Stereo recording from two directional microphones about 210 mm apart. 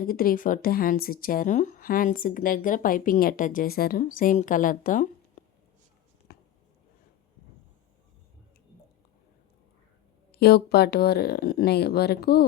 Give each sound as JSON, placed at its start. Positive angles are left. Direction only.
{"t": 0.0, "sound": "speech", "side_deg": 45}
{"t": 5.4, "sound": "a sound", "side_deg": 40}
{"t": 10.3, "sound": "speech", "side_deg": 50}